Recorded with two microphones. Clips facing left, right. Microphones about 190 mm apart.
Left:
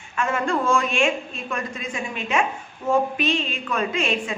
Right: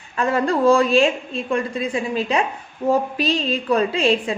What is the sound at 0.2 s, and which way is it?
A woman's voice, 35° right (ahead or behind).